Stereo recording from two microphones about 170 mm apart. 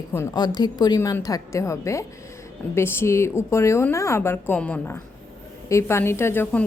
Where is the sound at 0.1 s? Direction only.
15° left (ahead or behind).